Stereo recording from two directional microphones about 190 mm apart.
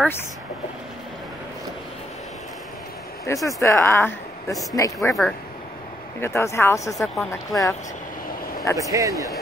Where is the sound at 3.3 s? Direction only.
15° left (ahead or behind).